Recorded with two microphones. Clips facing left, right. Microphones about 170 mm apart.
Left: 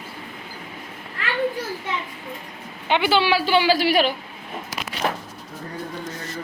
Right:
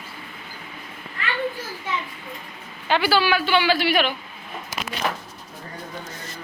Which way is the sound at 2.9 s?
20° left (ahead or behind).